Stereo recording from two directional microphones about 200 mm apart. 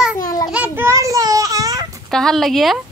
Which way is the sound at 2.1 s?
Centre (ahead or behind).